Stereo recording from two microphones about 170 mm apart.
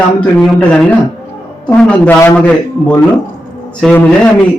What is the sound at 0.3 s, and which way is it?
A man's voice, 5° left (ahead or behind).